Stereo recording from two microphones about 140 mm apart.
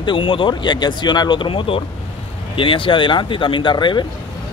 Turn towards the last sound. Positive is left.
turn(degrees=35)  # may be behind; listen again after turning